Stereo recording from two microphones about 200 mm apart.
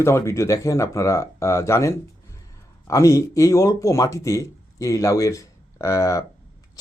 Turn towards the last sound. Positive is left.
turn(degrees=15)  # may be behind; listen again after turning